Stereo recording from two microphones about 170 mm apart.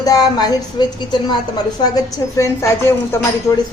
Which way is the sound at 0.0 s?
25° left (ahead or behind).